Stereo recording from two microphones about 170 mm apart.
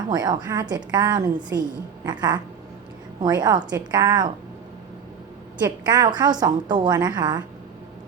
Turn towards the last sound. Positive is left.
turn(degrees=-25)  # may be behind; listen again after turning